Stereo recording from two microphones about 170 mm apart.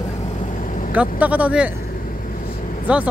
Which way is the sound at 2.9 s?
10° right (ahead or behind).